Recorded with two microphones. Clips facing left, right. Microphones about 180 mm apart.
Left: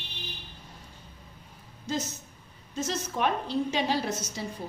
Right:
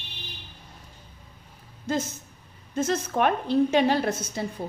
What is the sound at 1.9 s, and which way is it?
A woman's voice, 55° right (ahead or behind).